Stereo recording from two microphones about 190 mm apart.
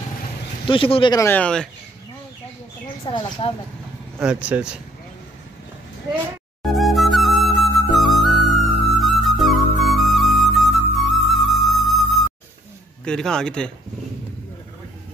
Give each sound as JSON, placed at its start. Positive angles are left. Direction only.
{"t": 0.7, "sound": "speech", "side_deg": 30}
{"t": 1.2, "sound": "speech", "side_deg": 10}
{"t": 3.1, "sound": "speech", "side_deg": 25}
{"t": 4.2, "sound": "a man's voice", "side_deg": -5}
{"t": 6.6, "sound": "flute", "side_deg": 0}
{"t": 13.0, "sound": "a man's voice", "side_deg": 5}